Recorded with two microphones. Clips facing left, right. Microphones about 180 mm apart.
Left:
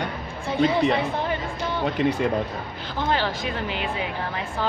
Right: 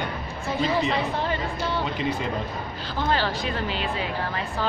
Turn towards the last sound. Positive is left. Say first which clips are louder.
# even
turn(degrees=15)  # may be behind; listen again after turning